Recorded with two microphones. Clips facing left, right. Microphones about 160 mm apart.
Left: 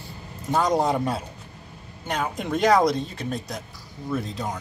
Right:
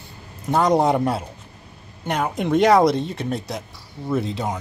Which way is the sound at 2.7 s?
25° right (ahead or behind).